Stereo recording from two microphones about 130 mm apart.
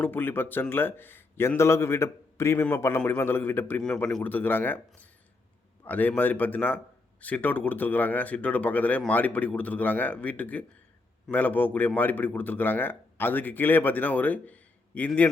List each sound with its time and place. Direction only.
0.0 s speech: 15° left (ahead or behind)
5.8 s speech: 15° left (ahead or behind)